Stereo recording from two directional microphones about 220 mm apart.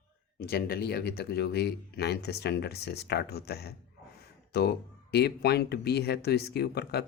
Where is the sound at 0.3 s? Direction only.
45° left (ahead or behind).